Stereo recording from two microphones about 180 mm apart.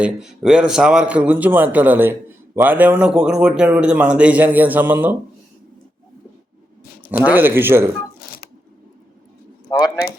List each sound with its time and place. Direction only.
0.0 s a man's voice: 5° right (ahead or behind)
7.3 s a man's voice: 10° right (ahead or behind)
9.6 s a sound: 20° left (ahead or behind)